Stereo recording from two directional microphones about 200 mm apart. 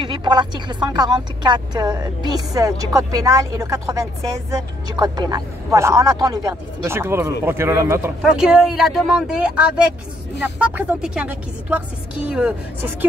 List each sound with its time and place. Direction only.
0.0 s speech: 25° right (ahead or behind); by 12.9 s 5° right (ahead or behind)